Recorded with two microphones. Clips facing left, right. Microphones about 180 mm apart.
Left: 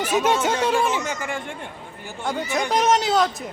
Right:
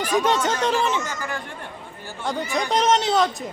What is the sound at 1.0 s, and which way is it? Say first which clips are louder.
Chatter: left 2 dB; 25° left (ahead or behind).